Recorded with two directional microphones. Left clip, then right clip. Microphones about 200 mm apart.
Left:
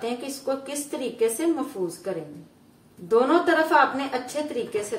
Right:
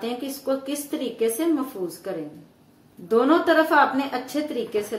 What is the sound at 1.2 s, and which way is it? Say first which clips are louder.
A woman's voice: right 1 dB; 30° right (ahead or behind).